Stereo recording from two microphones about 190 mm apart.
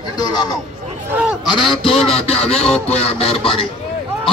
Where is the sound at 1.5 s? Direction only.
25° left (ahead or behind).